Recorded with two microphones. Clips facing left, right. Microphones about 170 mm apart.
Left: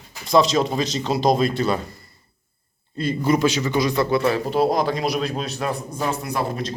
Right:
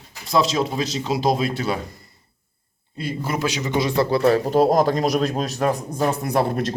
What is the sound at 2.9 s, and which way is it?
A man's voice, 10° right (ahead or behind).